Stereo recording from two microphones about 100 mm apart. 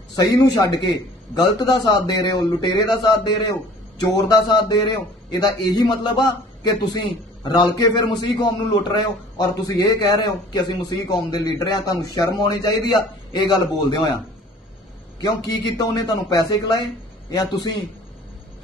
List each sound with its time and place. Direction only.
0.1 s a man's voice: 40° left (ahead or behind)
7.4 s a man's voice: 45° left (ahead or behind)
9.4 s a man's voice: 35° left (ahead or behind)
15.1 s a man's voice: 45° left (ahead or behind)